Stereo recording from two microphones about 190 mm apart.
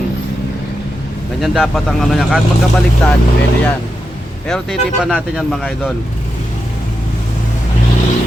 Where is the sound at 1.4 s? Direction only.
Centre (ahead or behind).